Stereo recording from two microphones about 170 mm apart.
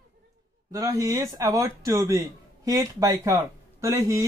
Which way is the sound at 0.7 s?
20° right (ahead or behind).